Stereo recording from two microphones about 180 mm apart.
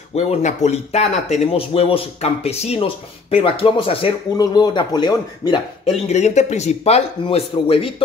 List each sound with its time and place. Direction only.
0.1 s speech: 40° left (ahead or behind); by 5.6 s 25° left (ahead or behind)
6.0 s speech: 40° left (ahead or behind)